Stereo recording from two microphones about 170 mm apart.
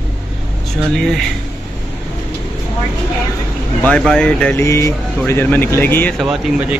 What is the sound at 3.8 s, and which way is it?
Speech, 5° left (ahead or behind).